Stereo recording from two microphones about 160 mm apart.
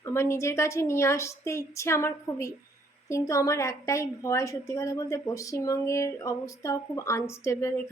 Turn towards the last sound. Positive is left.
turn(degrees=15)  # may be behind; listen again after turning